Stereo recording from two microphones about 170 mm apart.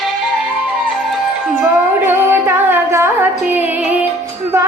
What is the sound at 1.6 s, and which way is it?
Music, 10° right (ahead or behind).